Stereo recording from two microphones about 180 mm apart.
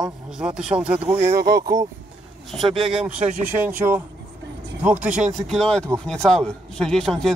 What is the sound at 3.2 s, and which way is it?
Speech, 45° right (ahead or behind).